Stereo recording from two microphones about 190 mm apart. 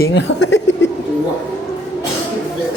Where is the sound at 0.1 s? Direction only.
70° left (ahead or behind).